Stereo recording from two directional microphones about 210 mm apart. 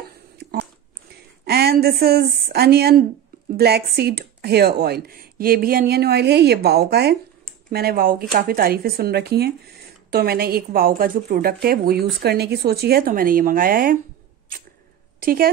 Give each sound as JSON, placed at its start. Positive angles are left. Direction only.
{"t": 1.4, "sound": "a woman's voice", "side_deg": -50}
{"t": 15.1, "sound": "a woman's voice", "side_deg": -45}